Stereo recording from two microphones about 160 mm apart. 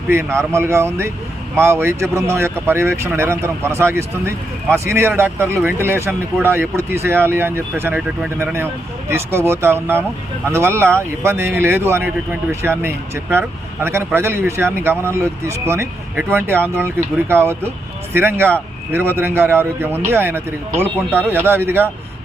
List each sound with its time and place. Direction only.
0.1 s speech: 15° right (ahead or behind)